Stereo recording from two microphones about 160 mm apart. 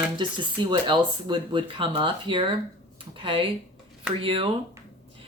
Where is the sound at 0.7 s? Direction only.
30° right (ahead or behind).